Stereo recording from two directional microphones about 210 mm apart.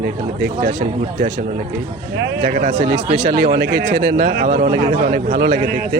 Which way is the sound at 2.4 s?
40° right (ahead or behind).